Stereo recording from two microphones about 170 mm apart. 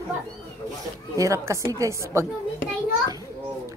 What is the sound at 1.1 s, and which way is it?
A woman's voice, 20° right (ahead or behind).